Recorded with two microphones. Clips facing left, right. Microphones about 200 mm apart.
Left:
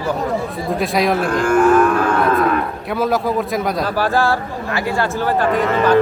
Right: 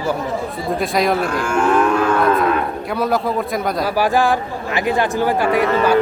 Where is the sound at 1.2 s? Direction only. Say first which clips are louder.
Left 4 dB; 55° left (ahead or behind).